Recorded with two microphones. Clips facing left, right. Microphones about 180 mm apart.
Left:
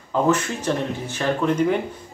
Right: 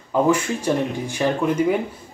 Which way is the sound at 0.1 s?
10° right (ahead or behind).